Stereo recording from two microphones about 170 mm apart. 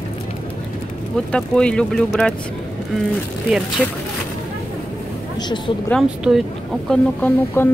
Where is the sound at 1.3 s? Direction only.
5° left (ahead or behind).